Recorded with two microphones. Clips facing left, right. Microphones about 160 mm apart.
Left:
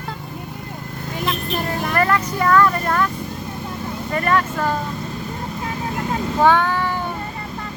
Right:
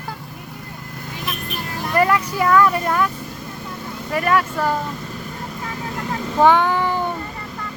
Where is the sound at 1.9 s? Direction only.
10° right (ahead or behind).